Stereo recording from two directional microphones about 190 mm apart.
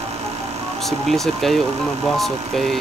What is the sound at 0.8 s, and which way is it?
Speech, centre (ahead or behind).